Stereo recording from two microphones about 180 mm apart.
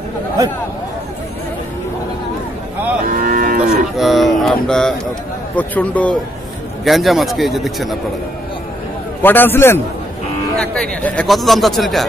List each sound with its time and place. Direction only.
3.1 s livestock: 50° right (ahead or behind)
3.6 s a sound: centre (ahead or behind)
5.6 s a man's voice: 10° left (ahead or behind)
9.2 s a man's voice: 10° left (ahead or behind)